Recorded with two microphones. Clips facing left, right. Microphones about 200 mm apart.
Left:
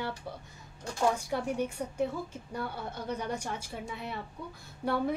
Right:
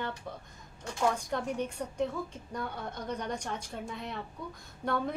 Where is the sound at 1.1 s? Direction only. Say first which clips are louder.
Left 1 dB; 10° left (ahead or behind).